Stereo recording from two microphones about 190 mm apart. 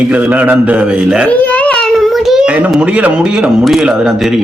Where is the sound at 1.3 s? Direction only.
10° left (ahead or behind).